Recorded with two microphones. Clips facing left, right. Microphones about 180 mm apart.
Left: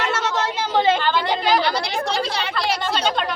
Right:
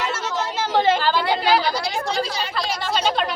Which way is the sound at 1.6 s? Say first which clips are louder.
Left 1 dB; 65° left (ahead or behind).